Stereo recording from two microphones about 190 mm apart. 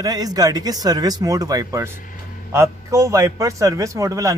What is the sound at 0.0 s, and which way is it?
A man's voice, 20° right (ahead or behind).